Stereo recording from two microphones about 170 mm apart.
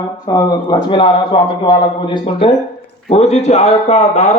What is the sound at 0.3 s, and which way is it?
A man's voice, 25° left (ahead or behind).